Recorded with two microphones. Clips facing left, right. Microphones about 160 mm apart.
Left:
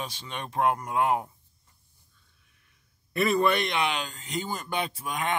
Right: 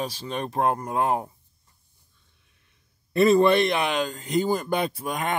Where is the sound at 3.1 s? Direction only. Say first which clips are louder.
Right 7 dB; 30° right (ahead or behind).